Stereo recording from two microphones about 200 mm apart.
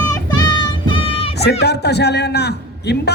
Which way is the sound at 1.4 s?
55° left (ahead or behind).